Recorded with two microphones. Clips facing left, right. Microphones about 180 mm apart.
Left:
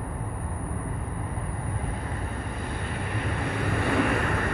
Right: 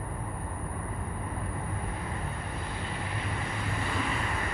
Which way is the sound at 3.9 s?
65° left (ahead or behind).